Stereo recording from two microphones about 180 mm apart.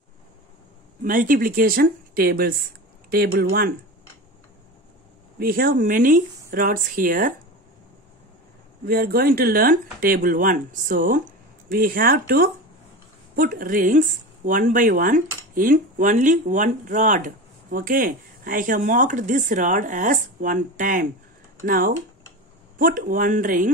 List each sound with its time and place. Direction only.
1.0 s speech: 50° right (ahead or behind)
5.4 s speech: 55° right (ahead or behind)
8.8 s speech: 55° right (ahead or behind)